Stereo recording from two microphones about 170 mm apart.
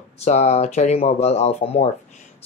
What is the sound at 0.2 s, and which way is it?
Speech, 40° left (ahead or behind).